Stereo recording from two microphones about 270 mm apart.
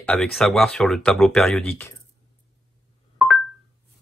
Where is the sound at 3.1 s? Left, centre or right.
Centre.